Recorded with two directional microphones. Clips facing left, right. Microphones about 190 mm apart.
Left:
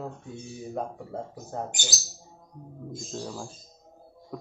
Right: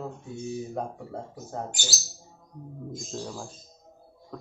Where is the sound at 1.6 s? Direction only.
20° left (ahead or behind).